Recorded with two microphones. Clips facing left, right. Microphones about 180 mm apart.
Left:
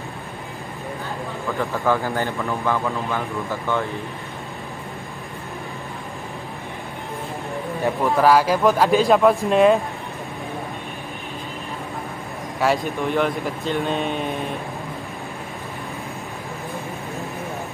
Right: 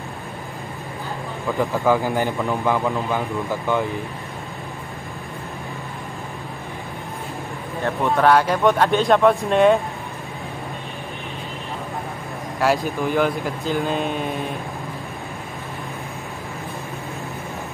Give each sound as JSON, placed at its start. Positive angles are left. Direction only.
{"t": 1.6, "sound": "speech", "side_deg": -15}
{"t": 7.8, "sound": "speech", "side_deg": 5}
{"t": 12.5, "sound": "speech", "side_deg": 0}